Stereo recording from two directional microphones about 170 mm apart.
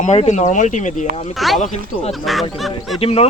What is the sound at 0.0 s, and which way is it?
Speech, 45° left (ahead or behind).